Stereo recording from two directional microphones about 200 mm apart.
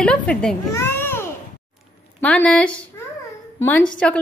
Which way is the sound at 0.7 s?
10° left (ahead or behind).